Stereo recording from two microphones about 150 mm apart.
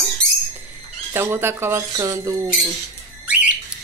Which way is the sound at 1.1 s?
15° right (ahead or behind).